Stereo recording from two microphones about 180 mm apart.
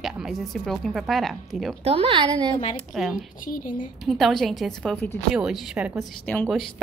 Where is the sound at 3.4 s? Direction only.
50° left (ahead or behind).